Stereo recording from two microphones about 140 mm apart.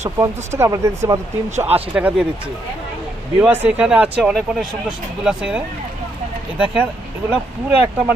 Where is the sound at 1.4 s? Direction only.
55° right (ahead or behind).